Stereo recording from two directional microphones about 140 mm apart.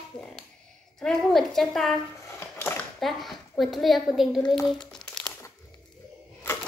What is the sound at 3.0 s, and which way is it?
A woman's voice, centre (ahead or behind).